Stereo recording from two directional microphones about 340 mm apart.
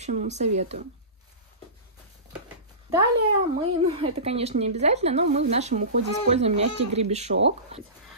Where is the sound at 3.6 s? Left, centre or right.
Centre.